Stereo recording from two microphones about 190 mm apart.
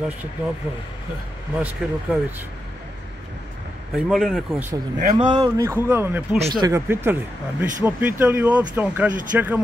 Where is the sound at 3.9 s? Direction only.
Centre (ahead or behind).